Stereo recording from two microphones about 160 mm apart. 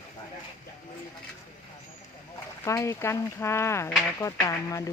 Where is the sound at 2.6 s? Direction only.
20° left (ahead or behind).